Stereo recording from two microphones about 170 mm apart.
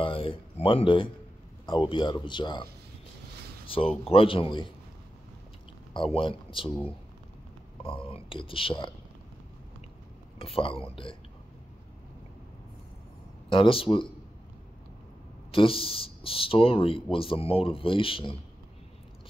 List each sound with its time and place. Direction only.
0.0 s speech: 30° left (ahead or behind)
3.6 s speech: 30° left (ahead or behind)
5.9 s speech: 30° left (ahead or behind)
7.8 s speech: 30° left (ahead or behind)
10.4 s speech: 30° left (ahead or behind)
13.5 s speech: 30° left (ahead or behind)
15.5 s speech: 30° left (ahead or behind)